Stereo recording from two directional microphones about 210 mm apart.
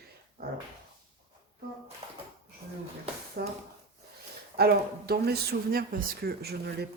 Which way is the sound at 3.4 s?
50° right (ahead or behind).